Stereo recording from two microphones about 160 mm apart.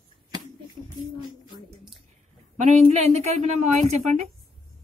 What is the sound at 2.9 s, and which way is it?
A woman's voice, 45° right (ahead or behind).